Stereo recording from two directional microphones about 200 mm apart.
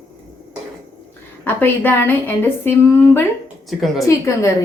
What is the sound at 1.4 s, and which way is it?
A woman's voice, 10° left (ahead or behind).